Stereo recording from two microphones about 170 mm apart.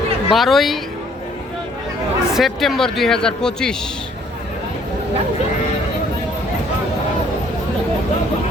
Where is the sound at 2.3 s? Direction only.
Centre (ahead or behind).